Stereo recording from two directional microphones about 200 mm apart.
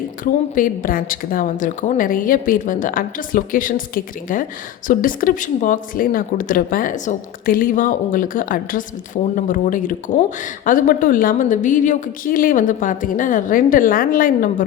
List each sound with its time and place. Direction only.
0.5 s speech: 40° left (ahead or behind)